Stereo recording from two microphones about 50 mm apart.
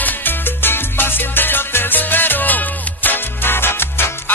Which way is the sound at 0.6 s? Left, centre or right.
Left.